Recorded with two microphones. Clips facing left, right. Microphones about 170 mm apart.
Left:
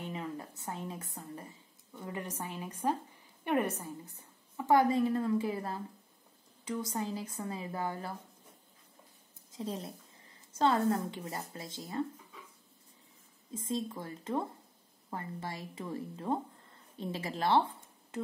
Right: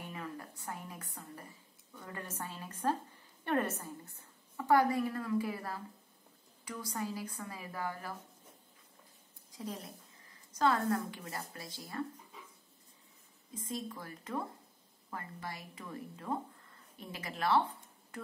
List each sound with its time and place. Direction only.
0.0 s a sound: 20° left (ahead or behind)
2.0 s a woman's voice: 20° left (ahead or behind)
9.5 s a woman's voice: 25° left (ahead or behind)
13.5 s a woman's voice: 25° left (ahead or behind)